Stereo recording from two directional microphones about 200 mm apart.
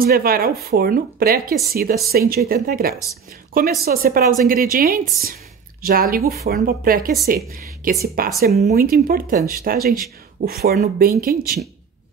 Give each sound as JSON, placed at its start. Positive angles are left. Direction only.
{"t": 0.0, "sound": "speech", "side_deg": -50}